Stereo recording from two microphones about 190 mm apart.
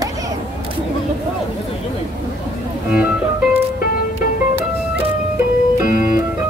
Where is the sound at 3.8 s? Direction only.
50° left (ahead or behind).